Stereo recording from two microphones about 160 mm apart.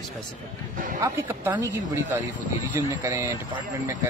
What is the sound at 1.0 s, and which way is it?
Speech, 15° right (ahead or behind).